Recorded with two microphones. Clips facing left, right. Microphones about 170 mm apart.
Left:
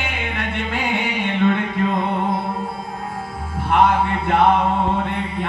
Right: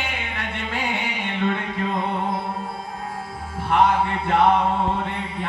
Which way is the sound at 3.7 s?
60° left (ahead or behind).